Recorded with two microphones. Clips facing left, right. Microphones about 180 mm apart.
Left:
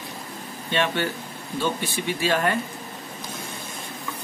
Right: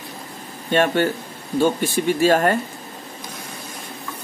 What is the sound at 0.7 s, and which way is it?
Speech, 45° right (ahead or behind).